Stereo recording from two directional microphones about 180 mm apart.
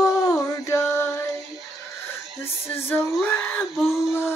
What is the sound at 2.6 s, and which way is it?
Female singing, 10° left (ahead or behind).